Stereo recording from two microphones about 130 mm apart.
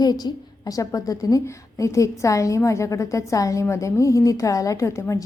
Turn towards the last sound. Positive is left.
turn(degrees=20)  # may be behind; listen again after turning